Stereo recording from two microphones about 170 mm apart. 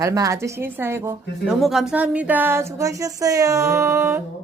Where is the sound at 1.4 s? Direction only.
Centre (ahead or behind).